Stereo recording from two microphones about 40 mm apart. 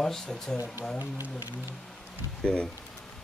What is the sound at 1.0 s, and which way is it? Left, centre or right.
Speech, right.